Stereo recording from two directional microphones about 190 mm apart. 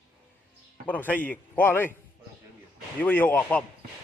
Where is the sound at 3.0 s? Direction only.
10° left (ahead or behind).